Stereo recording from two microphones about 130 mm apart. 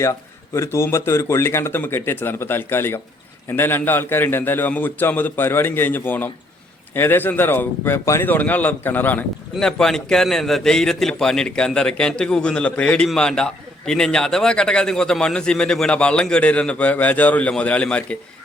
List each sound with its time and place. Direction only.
0.0 s speech: 20° left (ahead or behind)